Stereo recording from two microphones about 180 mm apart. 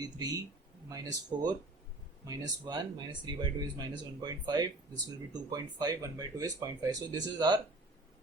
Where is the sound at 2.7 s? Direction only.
25° right (ahead or behind).